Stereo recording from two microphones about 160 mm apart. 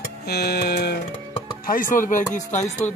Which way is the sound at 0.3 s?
85° left.